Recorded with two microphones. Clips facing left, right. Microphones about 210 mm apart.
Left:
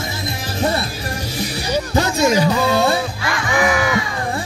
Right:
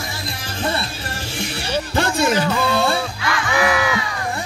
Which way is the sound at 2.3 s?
15° left (ahead or behind).